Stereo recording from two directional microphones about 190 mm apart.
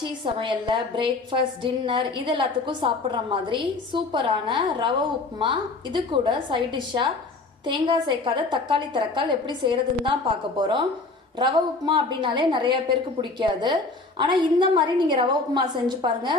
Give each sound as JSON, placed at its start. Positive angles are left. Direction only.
{"t": 0.0, "sound": "a woman's voice", "side_deg": -25}
{"t": 11.9, "sound": "a woman's voice", "side_deg": -25}